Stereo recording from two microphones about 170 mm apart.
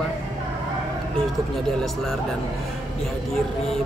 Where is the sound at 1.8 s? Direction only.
Centre (ahead or behind).